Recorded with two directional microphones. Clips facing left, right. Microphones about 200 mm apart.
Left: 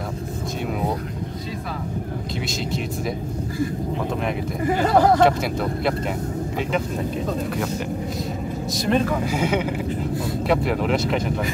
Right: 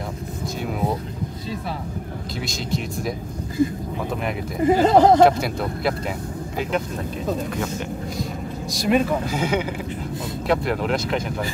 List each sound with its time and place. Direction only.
0.7 s vehicle: centre (ahead or behind)
4.6 s speech: 20° right (ahead or behind)
5.2 s speech: centre (ahead or behind)
7.2 s speech: centre (ahead or behind)
8.7 s speech: 5° right (ahead or behind)